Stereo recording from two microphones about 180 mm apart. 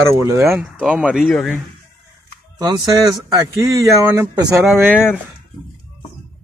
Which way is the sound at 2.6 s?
20° right (ahead or behind).